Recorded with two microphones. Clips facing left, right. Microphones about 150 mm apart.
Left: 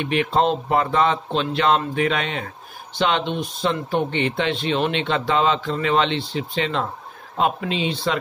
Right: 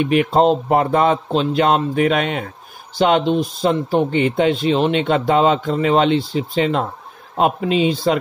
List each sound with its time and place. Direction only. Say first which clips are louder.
0.0 s speech: right 5 dB; 45° right (ahead or behind)